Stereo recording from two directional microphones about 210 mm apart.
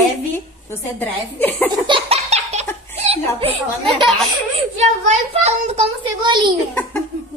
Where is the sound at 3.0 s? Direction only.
30° right (ahead or behind).